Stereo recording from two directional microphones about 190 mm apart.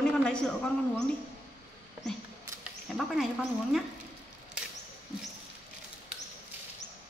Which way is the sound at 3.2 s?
Centre (ahead or behind).